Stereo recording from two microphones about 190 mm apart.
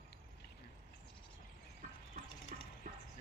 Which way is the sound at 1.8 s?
45° right (ahead or behind).